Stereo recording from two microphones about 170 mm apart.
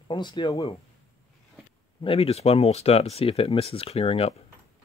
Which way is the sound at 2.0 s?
35° left (ahead or behind).